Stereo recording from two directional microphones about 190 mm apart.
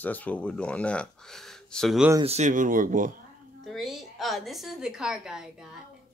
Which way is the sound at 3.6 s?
Centre (ahead or behind).